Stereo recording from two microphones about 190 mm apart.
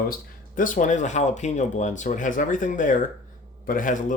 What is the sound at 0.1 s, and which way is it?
Speech, 45° left (ahead or behind).